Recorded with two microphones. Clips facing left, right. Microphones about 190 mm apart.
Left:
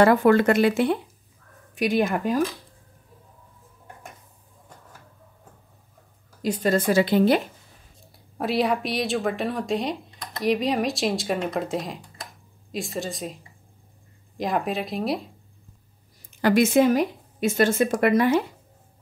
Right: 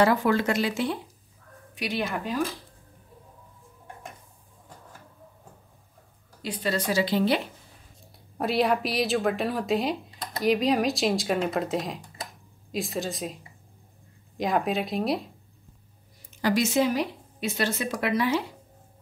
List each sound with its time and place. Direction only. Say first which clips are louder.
0.0 s a woman's voice: left 5 dB; 55° left (ahead or behind)
6.4 s a woman's voice: left 6 dB; 45° left (ahead or behind)
8.4 s speech: left 1 dB; centre (ahead or behind)
16.3 s a woman's voice: left 5 dB; 55° left (ahead or behind)